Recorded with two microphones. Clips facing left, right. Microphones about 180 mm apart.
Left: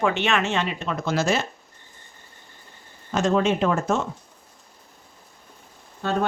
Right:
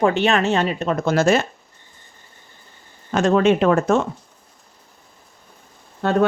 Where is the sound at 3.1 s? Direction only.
65° right (ahead or behind).